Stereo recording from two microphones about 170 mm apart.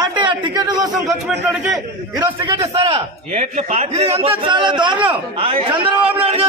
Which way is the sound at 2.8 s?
35° right (ahead or behind).